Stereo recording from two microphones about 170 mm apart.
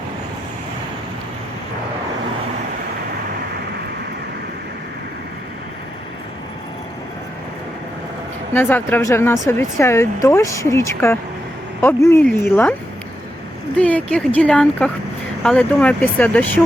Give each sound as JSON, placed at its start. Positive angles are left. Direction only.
{"t": 8.5, "sound": "speech", "side_deg": 10}
{"t": 13.7, "sound": "speech", "side_deg": 10}